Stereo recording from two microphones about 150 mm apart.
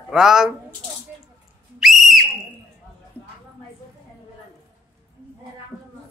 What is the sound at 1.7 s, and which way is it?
Whistle, centre (ahead or behind).